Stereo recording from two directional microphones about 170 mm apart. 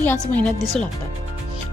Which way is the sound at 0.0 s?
10° left (ahead or behind).